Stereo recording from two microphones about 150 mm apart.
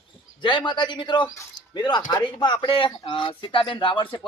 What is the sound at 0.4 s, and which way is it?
A man's voice, 30° left (ahead or behind).